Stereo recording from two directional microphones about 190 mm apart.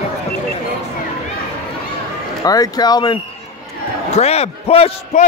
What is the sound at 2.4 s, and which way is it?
Speech, 20° left (ahead or behind).